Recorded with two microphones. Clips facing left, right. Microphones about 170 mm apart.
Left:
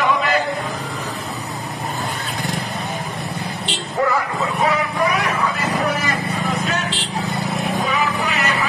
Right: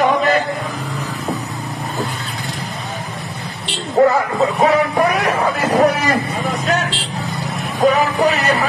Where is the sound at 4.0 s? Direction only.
35° right (ahead or behind).